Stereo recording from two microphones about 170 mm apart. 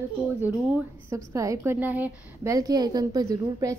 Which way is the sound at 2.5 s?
20° right (ahead or behind).